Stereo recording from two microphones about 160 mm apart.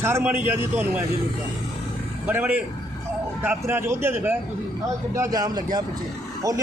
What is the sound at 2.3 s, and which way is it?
A man's voice, 10° right (ahead or behind).